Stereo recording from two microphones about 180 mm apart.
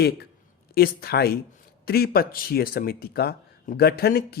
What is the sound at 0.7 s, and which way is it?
Speech, 60° left (ahead or behind).